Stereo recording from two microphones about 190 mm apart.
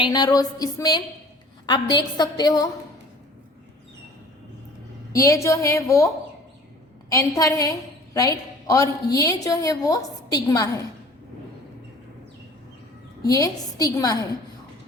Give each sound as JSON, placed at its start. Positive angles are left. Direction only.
{"t": 0.0, "sound": "a woman's voice", "side_deg": 20}
{"t": 5.1, "sound": "a woman's voice", "side_deg": 15}
{"t": 7.1, "sound": "a woman's voice", "side_deg": 20}
{"t": 13.2, "sound": "a woman's voice", "side_deg": 20}